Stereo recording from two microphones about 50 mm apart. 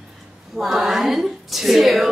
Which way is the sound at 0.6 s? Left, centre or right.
Centre.